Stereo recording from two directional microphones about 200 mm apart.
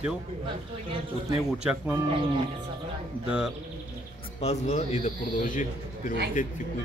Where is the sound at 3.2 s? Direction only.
5° right (ahead or behind).